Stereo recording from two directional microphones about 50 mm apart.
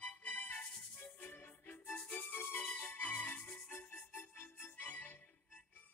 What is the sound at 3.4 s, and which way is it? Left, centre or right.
Music, centre.